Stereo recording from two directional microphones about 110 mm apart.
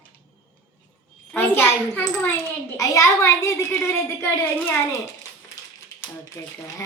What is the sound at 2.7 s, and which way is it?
A woman's voice, 30° left (ahead or behind).